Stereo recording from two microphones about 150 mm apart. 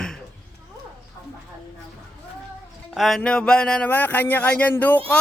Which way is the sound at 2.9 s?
Centre (ahead or behind).